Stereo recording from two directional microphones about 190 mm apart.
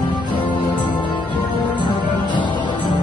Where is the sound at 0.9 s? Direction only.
25° left (ahead or behind).